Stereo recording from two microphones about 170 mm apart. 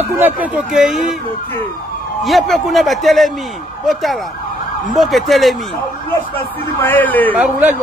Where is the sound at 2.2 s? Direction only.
Centre (ahead or behind).